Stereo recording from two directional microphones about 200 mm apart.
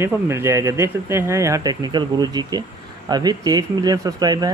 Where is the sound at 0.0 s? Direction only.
10° right (ahead or behind).